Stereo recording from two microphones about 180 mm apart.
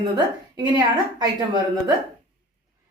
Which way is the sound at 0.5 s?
20° right (ahead or behind).